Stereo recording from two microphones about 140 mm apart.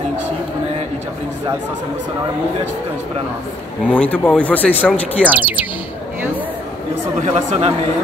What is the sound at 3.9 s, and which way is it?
Speech, 10° left (ahead or behind).